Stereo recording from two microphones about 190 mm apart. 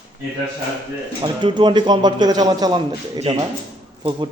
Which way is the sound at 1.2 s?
25° right (ahead or behind).